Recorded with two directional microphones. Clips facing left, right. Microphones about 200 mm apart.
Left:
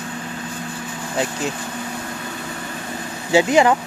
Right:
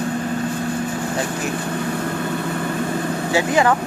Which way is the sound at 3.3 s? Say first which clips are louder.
Left 4 dB; 20° left (ahead or behind).